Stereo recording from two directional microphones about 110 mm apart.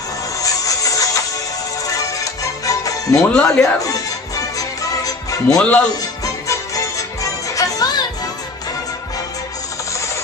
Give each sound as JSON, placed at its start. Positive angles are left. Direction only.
{"t": 0.4, "sound": "music", "side_deg": 30}
{"t": 3.4, "sound": "speech", "side_deg": 30}
{"t": 4.6, "sound": "music", "side_deg": 30}
{"t": 5.6, "sound": "speech", "side_deg": 10}
{"t": 6.2, "sound": "music", "side_deg": 30}